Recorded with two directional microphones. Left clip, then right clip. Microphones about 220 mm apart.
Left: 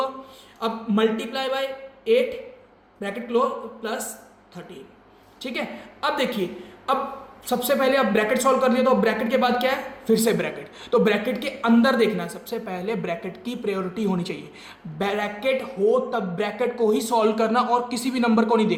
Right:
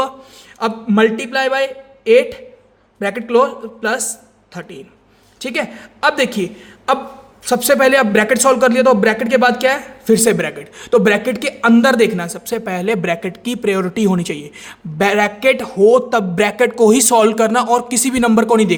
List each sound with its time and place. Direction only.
0.6 s a man's voice: 35° right (ahead or behind)